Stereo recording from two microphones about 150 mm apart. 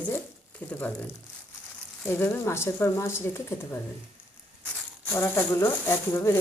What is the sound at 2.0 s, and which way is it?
Speech, 15° left (ahead or behind).